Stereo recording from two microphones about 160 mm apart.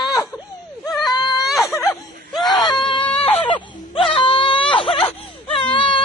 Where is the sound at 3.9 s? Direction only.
35° left (ahead or behind).